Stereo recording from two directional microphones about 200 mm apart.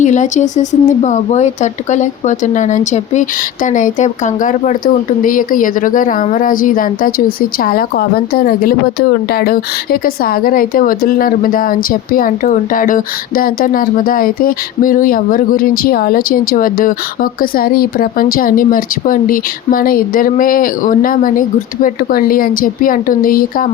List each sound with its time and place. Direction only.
0.0 s a woman's voice: 35° left (ahead or behind)